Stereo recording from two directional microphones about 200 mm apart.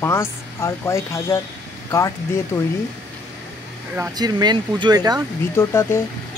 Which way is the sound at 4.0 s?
15° right (ahead or behind).